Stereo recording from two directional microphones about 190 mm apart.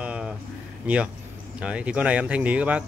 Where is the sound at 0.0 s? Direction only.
5° right (ahead or behind).